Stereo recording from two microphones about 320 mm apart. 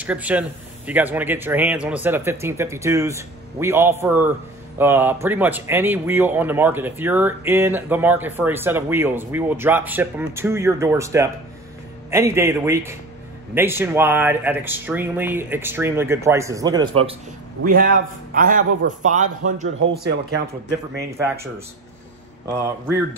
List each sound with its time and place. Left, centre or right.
0.0 s speech: centre
17.6 s a man's voice: right